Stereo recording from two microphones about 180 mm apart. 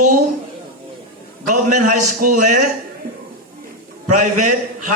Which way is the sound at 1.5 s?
45° right (ahead or behind).